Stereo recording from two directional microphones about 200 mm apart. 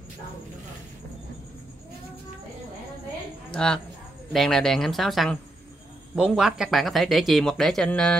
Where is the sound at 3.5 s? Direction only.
5° left (ahead or behind).